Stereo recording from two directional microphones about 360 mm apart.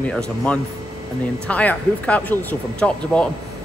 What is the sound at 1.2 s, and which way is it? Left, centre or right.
Speech, centre.